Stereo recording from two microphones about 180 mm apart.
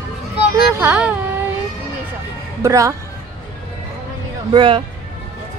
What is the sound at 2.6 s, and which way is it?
Speech, 15° right (ahead or behind).